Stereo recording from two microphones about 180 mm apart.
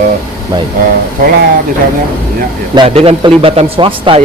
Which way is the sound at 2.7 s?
30° right (ahead or behind).